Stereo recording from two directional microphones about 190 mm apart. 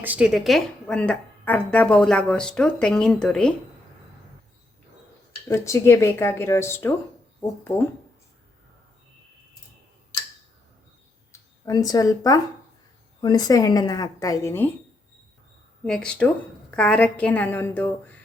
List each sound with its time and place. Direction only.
0.0 s a woman's voice: 5° right (ahead or behind)
5.5 s speech: 15° left (ahead or behind)
11.3 s a woman's voice: 20° left (ahead or behind)
15.8 s a woman's voice: 5° left (ahead or behind)